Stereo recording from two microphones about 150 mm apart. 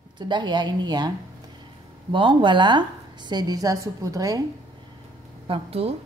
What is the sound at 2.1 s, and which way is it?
A woman's voice, 35° right (ahead or behind).